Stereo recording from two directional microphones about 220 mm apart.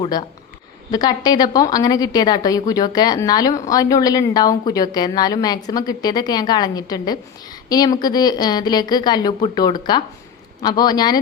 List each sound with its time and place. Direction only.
0.0 s a woman's voice: 20° left (ahead or behind)